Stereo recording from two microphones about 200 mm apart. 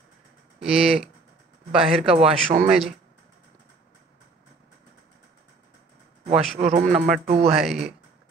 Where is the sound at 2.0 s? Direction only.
30° right (ahead or behind).